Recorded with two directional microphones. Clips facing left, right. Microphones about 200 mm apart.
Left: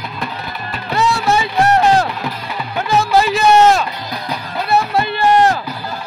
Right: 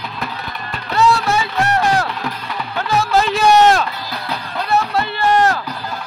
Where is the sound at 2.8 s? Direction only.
10° left (ahead or behind).